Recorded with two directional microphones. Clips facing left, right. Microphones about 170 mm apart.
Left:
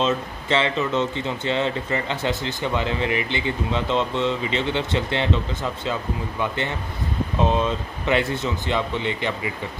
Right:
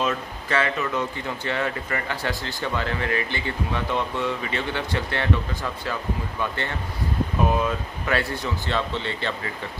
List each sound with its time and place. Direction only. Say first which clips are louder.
0.0 s speech: left 3 dB; 25° left (ahead or behind)